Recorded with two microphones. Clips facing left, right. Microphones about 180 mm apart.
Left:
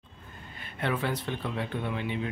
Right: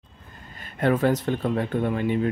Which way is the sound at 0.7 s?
45° right (ahead or behind).